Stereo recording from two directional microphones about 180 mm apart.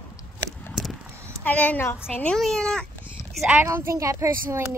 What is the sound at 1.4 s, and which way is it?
A woman's voice, 10° left (ahead or behind).